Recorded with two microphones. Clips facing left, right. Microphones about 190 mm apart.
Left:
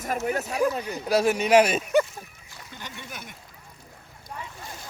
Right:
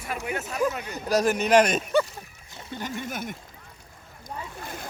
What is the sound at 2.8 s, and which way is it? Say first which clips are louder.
Speech: right 8 dB; 45° right (ahead or behind).